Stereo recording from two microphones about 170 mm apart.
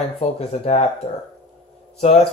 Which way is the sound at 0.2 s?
40° left (ahead or behind).